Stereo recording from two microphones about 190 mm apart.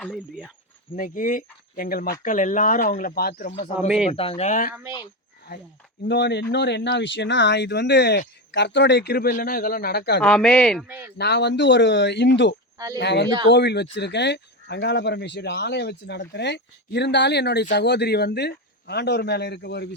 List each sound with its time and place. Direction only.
0.0 s speech: centre (ahead or behind)
0.9 s speech: 45° left (ahead or behind)
3.8 s speech: 5° right (ahead or behind)
4.1 s speech: 30° left (ahead or behind)
6.1 s speech: 65° left (ahead or behind)
10.2 s speech: 5° left (ahead or behind)
10.8 s speech: 10° right (ahead or behind)
11.2 s speech: 60° left (ahead or behind)